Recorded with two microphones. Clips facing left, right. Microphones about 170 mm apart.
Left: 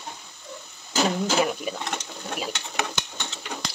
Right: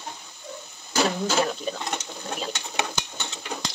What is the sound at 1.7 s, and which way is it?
Speech, 5° left (ahead or behind).